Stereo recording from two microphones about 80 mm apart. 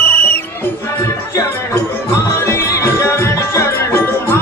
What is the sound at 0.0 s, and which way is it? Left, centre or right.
Music, left.